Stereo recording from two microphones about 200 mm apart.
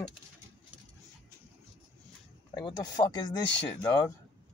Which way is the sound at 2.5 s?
20° left (ahead or behind).